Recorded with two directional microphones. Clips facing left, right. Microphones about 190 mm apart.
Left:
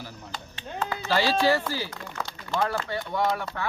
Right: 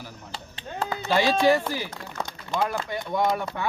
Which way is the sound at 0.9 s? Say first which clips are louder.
Right 2 dB; 20° right (ahead or behind).